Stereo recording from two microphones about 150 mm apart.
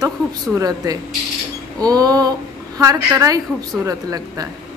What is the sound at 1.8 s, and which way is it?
A woman's voice, 25° right (ahead or behind).